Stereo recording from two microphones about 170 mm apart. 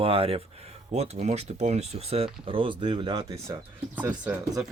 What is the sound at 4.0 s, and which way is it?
Speech, 10° right (ahead or behind).